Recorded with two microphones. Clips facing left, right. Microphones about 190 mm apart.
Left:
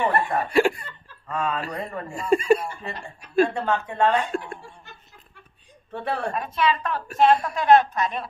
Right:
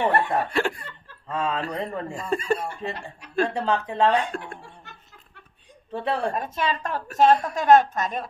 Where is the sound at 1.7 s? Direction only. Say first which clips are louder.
Right 2 dB; 20° right (ahead or behind).